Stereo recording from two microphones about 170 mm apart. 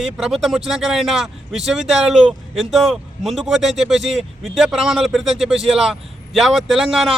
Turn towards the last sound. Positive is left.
turn(degrees=0)  # may be behind; listen again after turning